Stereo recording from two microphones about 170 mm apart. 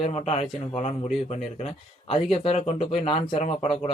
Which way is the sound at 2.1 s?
35° left (ahead or behind).